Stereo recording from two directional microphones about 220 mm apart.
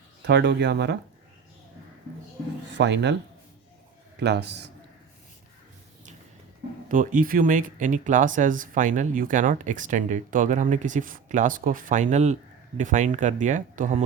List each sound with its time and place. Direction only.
0.3 s speech: 50° right (ahead or behind)
2.7 s speech: 50° right (ahead or behind)
4.2 s speech: 50° right (ahead or behind)
6.8 s speech: 40° right (ahead or behind)